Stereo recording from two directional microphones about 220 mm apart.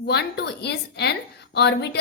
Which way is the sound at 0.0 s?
50° left (ahead or behind).